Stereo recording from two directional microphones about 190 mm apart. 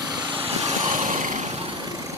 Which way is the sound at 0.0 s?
20° right (ahead or behind).